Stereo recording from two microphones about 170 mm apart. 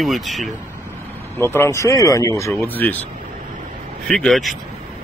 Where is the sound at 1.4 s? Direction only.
15° left (ahead or behind).